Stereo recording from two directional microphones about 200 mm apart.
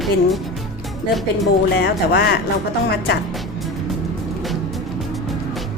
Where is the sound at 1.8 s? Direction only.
55° left (ahead or behind).